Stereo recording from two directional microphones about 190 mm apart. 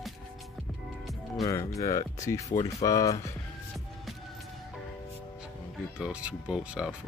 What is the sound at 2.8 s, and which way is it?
Speech, 20° left (ahead or behind).